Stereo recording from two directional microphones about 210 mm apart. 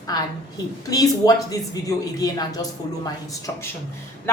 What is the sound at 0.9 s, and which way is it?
A woman's voice, 15° left (ahead or behind).